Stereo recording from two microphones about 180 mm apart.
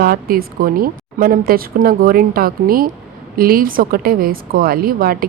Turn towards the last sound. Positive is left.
turn(degrees=-55)  # may be behind; listen again after turning